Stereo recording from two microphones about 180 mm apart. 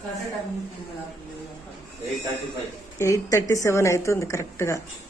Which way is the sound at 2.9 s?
15° left (ahead or behind).